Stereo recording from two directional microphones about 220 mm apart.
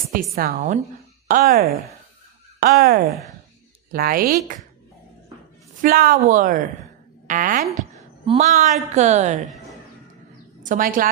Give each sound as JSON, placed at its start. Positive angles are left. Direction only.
{"t": 0.1, "sound": "a woman's voice", "side_deg": -40}
{"t": 5.8, "sound": "a woman's voice", "side_deg": -40}
{"t": 10.7, "sound": "a woman's voice", "side_deg": -40}